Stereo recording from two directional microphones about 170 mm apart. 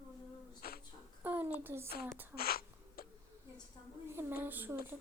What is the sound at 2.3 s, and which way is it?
Sneeze, 65° left (ahead or behind).